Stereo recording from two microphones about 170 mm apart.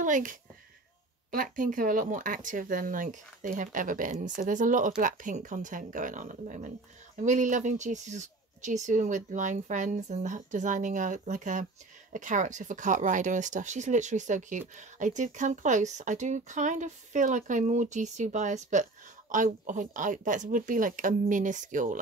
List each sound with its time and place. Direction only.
0.0 s speech: 50° right (ahead or behind)